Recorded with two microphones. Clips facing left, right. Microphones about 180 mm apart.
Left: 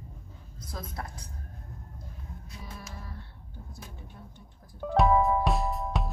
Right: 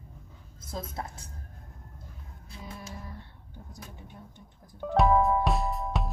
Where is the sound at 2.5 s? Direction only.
30° right (ahead or behind).